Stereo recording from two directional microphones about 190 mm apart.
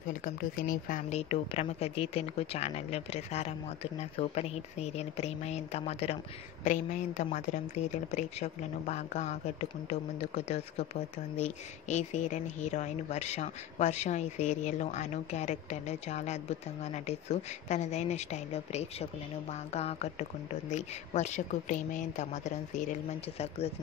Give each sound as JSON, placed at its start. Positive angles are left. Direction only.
{"t": 0.0, "sound": "speech", "side_deg": 45}